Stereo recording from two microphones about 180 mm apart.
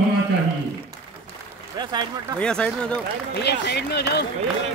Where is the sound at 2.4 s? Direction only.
5° left (ahead or behind).